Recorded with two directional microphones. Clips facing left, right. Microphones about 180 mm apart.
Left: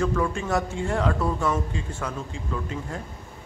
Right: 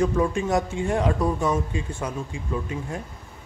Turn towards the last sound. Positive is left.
turn(degrees=-15)  # may be behind; listen again after turning